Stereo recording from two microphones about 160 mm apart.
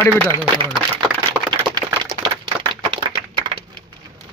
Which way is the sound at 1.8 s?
25° right (ahead or behind).